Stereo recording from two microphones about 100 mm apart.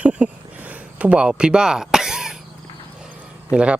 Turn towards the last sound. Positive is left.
turn(degrees=-10)  # may be behind; listen again after turning